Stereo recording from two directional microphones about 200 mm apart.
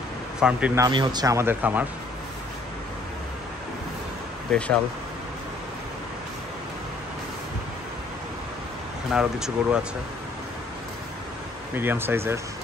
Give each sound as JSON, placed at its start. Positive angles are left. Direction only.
{"t": 0.4, "sound": "speech", "side_deg": -5}
{"t": 0.8, "sound": "speech", "side_deg": -20}
{"t": 4.5, "sound": "speech", "side_deg": 5}
{"t": 9.1, "sound": "speech", "side_deg": -5}
{"t": 11.7, "sound": "speech", "side_deg": -10}